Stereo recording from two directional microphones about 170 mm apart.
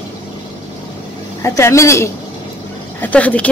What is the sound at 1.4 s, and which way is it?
Speech, 15° left (ahead or behind).